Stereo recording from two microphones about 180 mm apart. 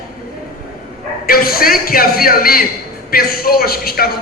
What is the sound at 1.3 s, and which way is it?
Speech, 55° left (ahead or behind).